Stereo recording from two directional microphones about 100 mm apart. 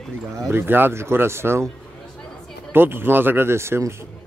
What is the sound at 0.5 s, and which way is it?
Speech, 20° right (ahead or behind).